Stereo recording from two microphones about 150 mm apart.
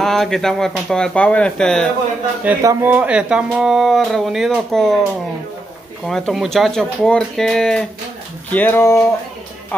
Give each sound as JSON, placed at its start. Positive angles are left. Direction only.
{"t": 0.0, "sound": "speech", "side_deg": 0}
{"t": 2.6, "sound": "speech", "side_deg": -20}
{"t": 6.0, "sound": "speech", "side_deg": 5}